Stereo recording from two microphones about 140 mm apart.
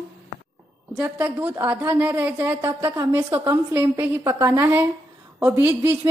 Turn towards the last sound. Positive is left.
turn(degrees=-15)  # may be behind; listen again after turning